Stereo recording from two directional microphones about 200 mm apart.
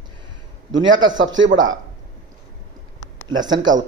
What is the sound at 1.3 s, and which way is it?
Speech, 70° right (ahead or behind).